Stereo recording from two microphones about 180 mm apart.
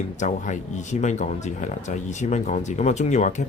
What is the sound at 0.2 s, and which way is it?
Speech, 45° left (ahead or behind).